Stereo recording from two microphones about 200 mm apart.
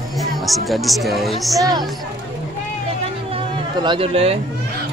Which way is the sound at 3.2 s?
25° right (ahead or behind).